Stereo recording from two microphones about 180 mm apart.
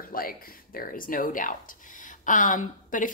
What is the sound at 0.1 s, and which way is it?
Speech, 55° left (ahead or behind).